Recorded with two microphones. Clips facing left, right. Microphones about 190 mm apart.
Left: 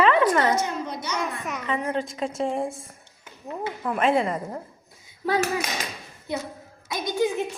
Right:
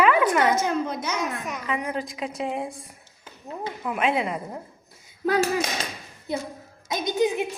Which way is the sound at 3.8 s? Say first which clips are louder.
Left 3 dB; 5° right (ahead or behind).